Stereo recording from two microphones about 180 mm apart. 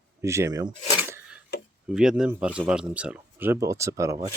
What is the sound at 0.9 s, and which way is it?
Filing, 10° right (ahead or behind).